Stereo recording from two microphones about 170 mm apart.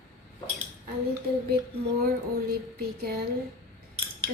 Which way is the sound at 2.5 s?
65° right (ahead or behind).